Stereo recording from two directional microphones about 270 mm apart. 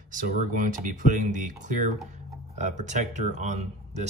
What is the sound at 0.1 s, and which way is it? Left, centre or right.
Speech, right.